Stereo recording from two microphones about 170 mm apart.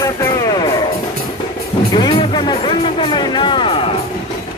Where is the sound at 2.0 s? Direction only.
30° left (ahead or behind).